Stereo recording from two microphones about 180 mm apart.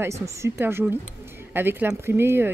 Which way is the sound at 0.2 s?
15° right (ahead or behind).